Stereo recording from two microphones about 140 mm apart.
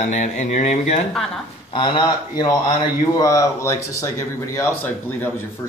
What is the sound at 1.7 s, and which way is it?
Speech, 35° left (ahead or behind).